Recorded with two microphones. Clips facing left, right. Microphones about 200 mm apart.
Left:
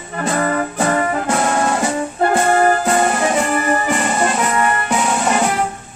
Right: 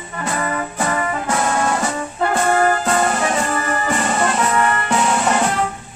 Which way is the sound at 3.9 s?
10° left (ahead or behind).